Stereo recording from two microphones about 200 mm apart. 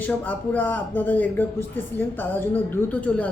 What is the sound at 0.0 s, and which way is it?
Speech, 10° left (ahead or behind).